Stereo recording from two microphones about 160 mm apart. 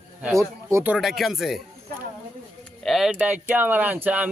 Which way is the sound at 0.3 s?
15° right (ahead or behind).